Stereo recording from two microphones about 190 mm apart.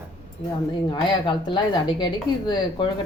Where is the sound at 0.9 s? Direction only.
25° left (ahead or behind).